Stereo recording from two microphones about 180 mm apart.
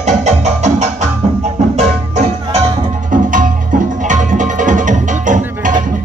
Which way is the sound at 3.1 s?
45° right (ahead or behind).